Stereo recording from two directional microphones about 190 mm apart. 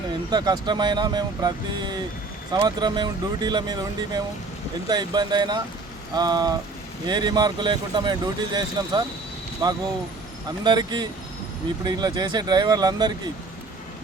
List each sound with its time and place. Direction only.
0.3 s speech: 20° right (ahead or behind)